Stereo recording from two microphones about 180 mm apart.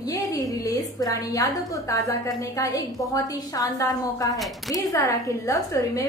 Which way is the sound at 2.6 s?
20° left (ahead or behind).